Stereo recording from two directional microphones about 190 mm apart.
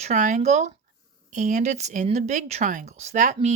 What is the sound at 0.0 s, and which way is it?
Speech, 40° right (ahead or behind).